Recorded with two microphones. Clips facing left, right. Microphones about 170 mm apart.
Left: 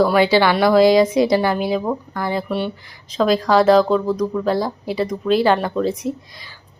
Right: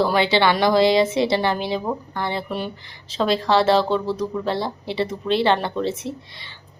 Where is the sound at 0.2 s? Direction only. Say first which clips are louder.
Left 3 dB; 25° right (ahead or behind).